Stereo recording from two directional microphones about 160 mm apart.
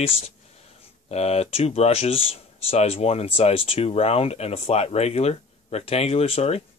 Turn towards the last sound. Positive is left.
turn(degrees=40)  # may be behind; listen again after turning